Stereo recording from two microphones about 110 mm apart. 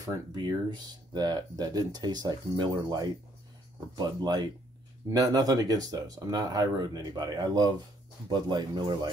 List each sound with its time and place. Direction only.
0.0 s speech: 40° right (ahead or behind)